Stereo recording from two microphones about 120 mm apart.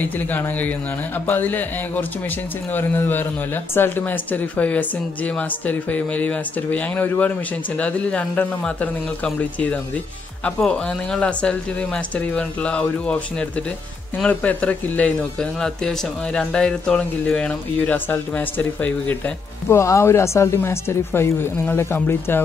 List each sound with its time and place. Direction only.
0.0 s speech: 15° left (ahead or behind)
19.8 s speech: 25° left (ahead or behind)